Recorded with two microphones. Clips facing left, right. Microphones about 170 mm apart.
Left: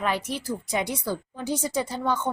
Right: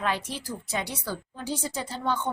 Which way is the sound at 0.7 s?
15° left (ahead or behind).